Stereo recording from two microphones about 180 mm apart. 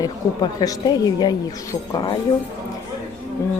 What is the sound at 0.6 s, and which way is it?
Speech, 20° left (ahead or behind).